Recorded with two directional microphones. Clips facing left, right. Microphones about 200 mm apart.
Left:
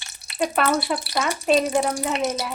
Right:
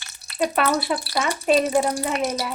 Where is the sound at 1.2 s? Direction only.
5° right (ahead or behind).